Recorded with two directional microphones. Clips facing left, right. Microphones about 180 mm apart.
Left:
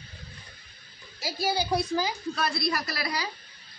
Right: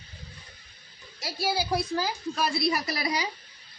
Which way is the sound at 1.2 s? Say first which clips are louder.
Left 1 dB; 5° right (ahead or behind).